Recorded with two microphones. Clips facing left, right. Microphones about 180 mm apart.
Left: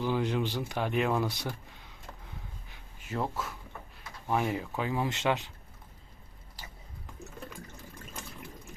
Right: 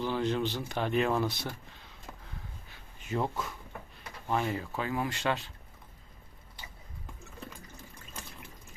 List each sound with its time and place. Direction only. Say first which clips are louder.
0.0 s speech: even; 10° left (ahead or behind)
3.1 s speech: right 1 dB; centre (ahead or behind)
4.3 s speech: left 1 dB; 15° left (ahead or behind)